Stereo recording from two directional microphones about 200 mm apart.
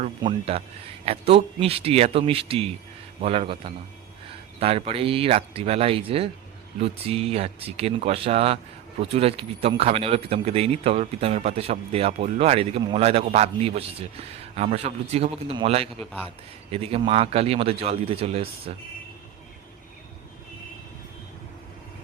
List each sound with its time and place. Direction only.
0.2 s speech: 25° right (ahead or behind)